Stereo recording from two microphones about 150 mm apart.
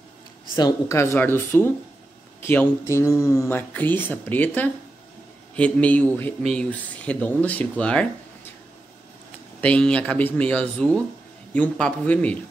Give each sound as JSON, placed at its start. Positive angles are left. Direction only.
{"t": 0.6, "sound": "speech", "side_deg": 25}
{"t": 9.6, "sound": "speech", "side_deg": 5}